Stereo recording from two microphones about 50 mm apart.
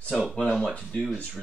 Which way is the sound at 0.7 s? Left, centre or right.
Left.